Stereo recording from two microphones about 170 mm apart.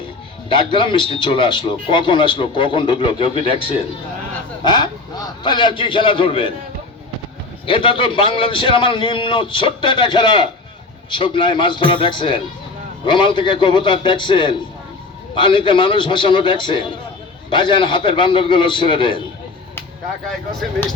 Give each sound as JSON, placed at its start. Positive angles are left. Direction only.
{"t": 0.4, "sound": "a man's voice", "side_deg": 30}
{"t": 7.7, "sound": "a man's voice", "side_deg": 30}